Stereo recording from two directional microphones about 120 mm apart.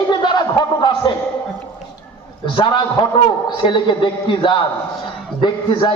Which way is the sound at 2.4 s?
40° left (ahead or behind).